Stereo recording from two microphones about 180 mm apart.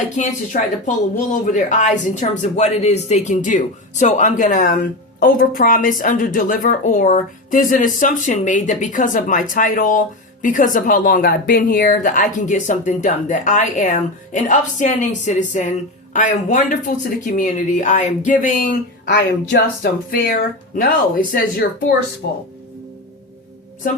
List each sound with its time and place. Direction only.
0.2 s a woman's voice: 45° left (ahead or behind)
19.0 s a woman's voice: 75° left (ahead or behind); by 21.9 s 55° left (ahead or behind)